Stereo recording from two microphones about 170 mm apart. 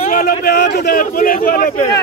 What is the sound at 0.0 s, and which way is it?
A man's voice, 55° left (ahead or behind).